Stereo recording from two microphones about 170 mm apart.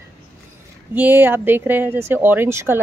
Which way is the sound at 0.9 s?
10° right (ahead or behind).